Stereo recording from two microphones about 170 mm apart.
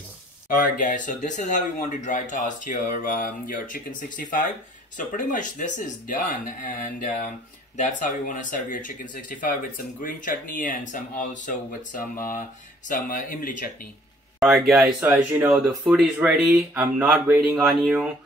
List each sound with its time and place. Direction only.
0.6 s speech: 50° left (ahead or behind)
14.4 s speech: centre (ahead or behind)